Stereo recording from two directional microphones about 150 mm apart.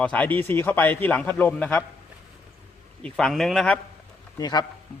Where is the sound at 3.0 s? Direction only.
5° left (ahead or behind).